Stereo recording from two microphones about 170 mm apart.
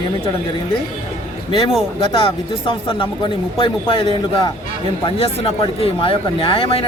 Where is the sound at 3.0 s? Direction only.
30° left (ahead or behind).